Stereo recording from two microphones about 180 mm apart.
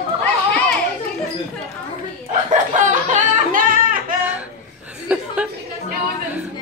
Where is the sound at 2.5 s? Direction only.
45° right (ahead or behind).